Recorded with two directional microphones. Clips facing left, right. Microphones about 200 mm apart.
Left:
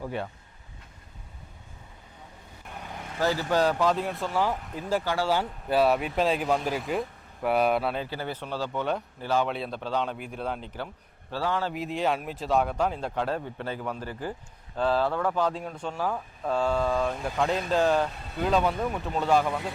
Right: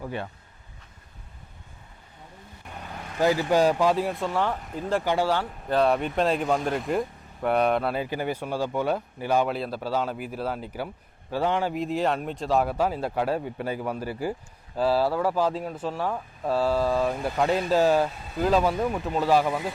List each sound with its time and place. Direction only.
2.6 s vehicle: 10° left (ahead or behind)
3.2 s speech: 15° right (ahead or behind); by 5.0 s 5° left (ahead or behind)
5.0 s speech: 20° right (ahead or behind)
5.3 s speech: 10° left (ahead or behind)
8.0 s speech: 15° right (ahead or behind)
11.3 s speech: 15° right (ahead or behind)
11.7 s speech: centre (ahead or behind)